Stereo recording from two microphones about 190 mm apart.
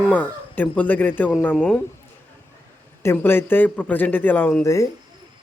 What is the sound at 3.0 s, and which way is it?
A man's voice, 10° left (ahead or behind).